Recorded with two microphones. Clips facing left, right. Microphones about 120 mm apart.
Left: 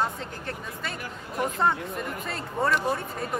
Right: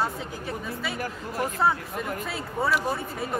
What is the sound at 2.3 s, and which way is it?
A man's voice, 5° right (ahead or behind).